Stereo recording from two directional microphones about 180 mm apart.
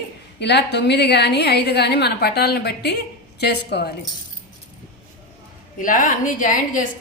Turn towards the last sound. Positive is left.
turn(degrees=45)  # may be behind; listen again after turning